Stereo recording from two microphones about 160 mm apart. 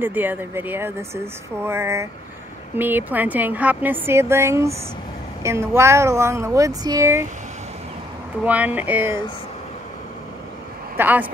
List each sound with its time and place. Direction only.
0.0 s speech: 10° right (ahead or behind)
8.5 s speech: 10° right (ahead or behind)
11.0 s speech: 10° right (ahead or behind)